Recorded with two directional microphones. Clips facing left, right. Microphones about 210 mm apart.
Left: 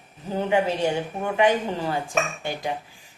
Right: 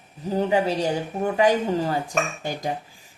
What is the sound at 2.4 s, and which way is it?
Speech, 40° right (ahead or behind).